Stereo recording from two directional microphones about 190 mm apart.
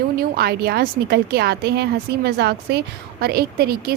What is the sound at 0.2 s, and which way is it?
A woman's voice, 55° right (ahead or behind).